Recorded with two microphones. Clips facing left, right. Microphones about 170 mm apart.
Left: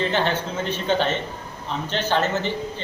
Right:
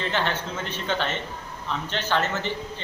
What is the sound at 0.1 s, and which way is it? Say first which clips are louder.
Speech: left 4 dB; 35° left (ahead or behind).